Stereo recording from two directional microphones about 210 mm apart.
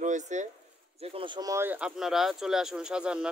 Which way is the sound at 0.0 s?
35° right (ahead or behind).